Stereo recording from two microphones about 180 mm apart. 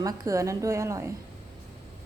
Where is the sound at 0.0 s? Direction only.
20° right (ahead or behind).